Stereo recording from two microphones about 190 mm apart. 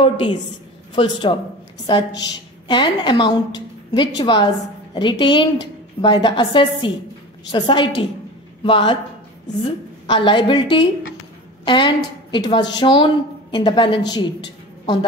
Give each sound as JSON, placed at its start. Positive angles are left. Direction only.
{"t": 0.0, "sound": "a woman's voice", "side_deg": 25}
{"t": 10.0, "sound": "a woman's voice", "side_deg": 25}